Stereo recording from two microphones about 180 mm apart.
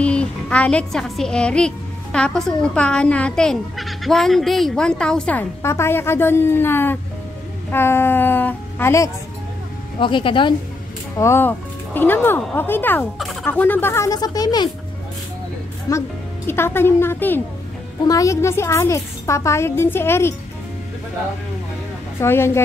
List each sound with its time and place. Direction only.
0.0 s a woman's voice: 5° left (ahead or behind)
9.9 s speech: 25° left (ahead or behind)
11.1 s a woman's voice: 15° left (ahead or behind)
13.2 s a sound: centre (ahead or behind)
13.5 s a woman's voice: 10° left (ahead or behind)
15.9 s a woman's voice: 20° left (ahead or behind)
22.2 s a woman's voice: 15° left (ahead or behind)